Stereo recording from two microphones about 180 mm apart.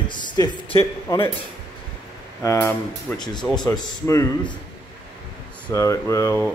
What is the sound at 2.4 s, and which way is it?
Speech, 15° left (ahead or behind).